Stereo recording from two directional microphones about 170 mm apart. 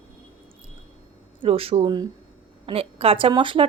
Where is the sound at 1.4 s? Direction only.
35° right (ahead or behind).